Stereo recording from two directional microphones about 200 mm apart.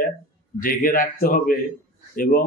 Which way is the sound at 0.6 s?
45° left (ahead or behind).